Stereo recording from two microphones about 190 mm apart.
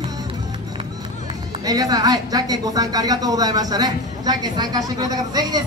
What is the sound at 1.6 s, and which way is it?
Speech, 20° right (ahead or behind).